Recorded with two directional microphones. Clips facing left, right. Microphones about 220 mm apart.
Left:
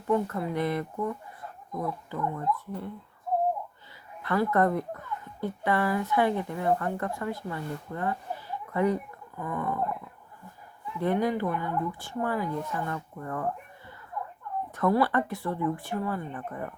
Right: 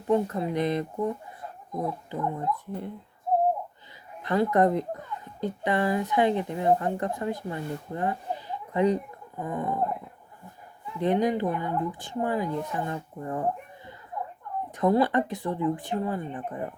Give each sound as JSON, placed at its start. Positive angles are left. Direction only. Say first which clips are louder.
{"t": 0.1, "sound": "a child's voice", "louder": "right 2 dB", "side_deg": -20}
{"t": 4.2, "sound": "a child's voice", "louder": "right 2 dB", "side_deg": -20}